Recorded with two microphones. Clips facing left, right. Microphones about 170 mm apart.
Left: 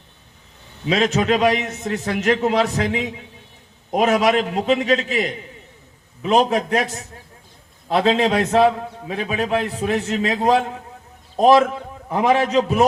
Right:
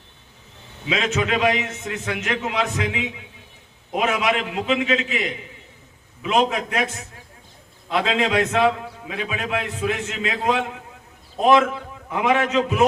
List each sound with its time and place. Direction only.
0.9 s a man's voice: 35° left (ahead or behind)
7.9 s a man's voice: 35° left (ahead or behind)